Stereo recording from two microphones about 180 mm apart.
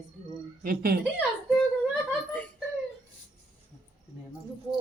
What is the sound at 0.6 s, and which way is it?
Speech, 55° right (ahead or behind).